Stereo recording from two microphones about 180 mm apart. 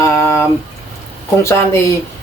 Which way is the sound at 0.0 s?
15° left (ahead or behind).